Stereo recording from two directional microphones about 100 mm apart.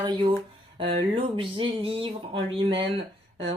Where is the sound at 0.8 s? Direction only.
60° right (ahead or behind).